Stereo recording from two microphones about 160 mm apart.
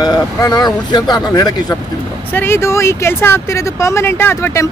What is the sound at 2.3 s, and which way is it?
Speech, 15° left (ahead or behind).